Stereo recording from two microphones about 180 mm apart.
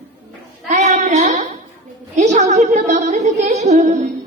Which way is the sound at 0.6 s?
40° right (ahead or behind).